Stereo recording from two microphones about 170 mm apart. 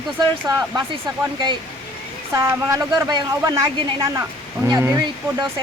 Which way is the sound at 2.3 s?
15° right (ahead or behind).